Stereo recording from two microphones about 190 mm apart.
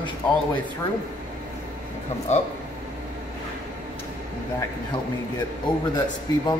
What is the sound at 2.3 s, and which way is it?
Speech, 35° left (ahead or behind).